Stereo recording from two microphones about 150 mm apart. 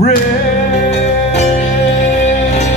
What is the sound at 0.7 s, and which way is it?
Music, 50° left (ahead or behind).